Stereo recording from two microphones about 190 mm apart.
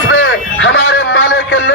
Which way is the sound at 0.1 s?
75° left (ahead or behind).